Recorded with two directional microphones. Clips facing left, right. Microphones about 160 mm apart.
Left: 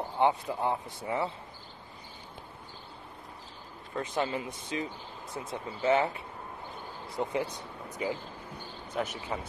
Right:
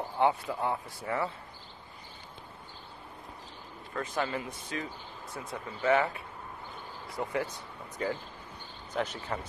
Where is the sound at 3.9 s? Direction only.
20° left (ahead or behind).